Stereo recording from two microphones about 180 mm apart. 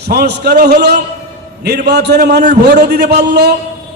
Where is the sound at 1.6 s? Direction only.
65° right (ahead or behind).